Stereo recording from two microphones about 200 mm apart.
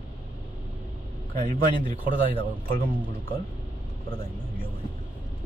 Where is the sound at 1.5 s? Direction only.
45° right (ahead or behind).